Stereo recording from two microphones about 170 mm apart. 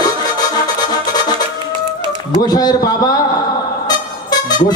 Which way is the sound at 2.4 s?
25° left (ahead or behind).